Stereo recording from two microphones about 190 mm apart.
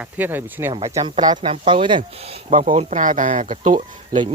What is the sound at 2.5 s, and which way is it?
Speech, 45° right (ahead or behind).